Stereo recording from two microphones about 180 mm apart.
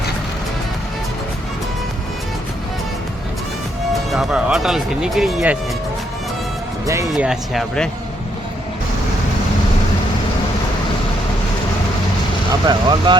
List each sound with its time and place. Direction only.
4.1 s speech: centre (ahead or behind)
6.8 s speech: 15° right (ahead or behind)
7.1 s speech: centre (ahead or behind)
12.6 s speech: 25° right (ahead or behind)